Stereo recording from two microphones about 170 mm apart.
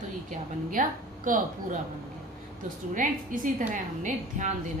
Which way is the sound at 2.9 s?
50° right (ahead or behind).